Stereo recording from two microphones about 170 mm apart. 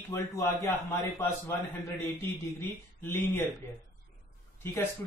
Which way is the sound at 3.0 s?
15° left (ahead or behind).